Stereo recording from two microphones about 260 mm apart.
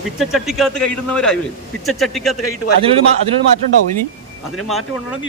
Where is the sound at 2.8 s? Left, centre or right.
Right.